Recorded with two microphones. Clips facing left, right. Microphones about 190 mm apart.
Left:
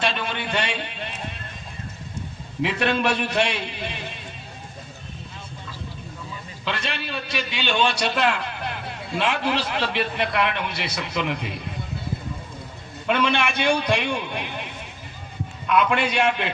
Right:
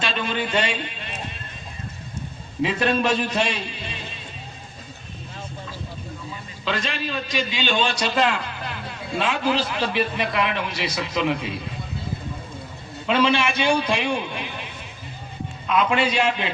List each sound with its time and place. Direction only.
0.4 s a sound: 60° left (ahead or behind)
2.6 s a man's voice: 65° left (ahead or behind)
6.7 s a man's voice: 65° left (ahead or behind)
13.1 s a man's voice: 60° left (ahead or behind)
15.7 s a man's voice: 60° left (ahead or behind)